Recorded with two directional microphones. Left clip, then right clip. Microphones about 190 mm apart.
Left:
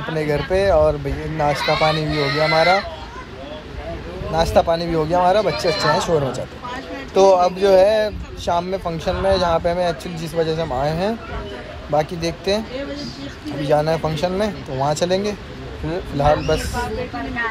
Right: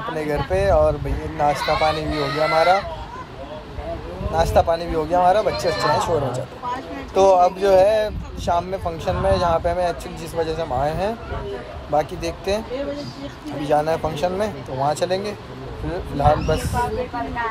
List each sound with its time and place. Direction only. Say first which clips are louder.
0.1 s speech: left 3 dB; 10° right (ahead or behind)
2.1 s speech: left 2 dB; 20° right (ahead or behind)
2.5 s speech: left 1 dB; 10° right (ahead or behind)
4.3 s speech: left 1 dB; 10° right (ahead or behind)
13.7 s speech: left 1 dB; 10° right (ahead or behind)